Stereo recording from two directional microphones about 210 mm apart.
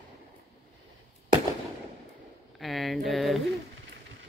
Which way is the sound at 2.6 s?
Centre (ahead or behind).